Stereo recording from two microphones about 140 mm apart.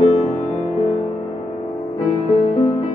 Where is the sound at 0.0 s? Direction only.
45° left (ahead or behind).